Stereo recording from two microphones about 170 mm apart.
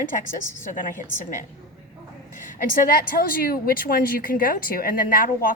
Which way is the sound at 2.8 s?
55° left (ahead or behind).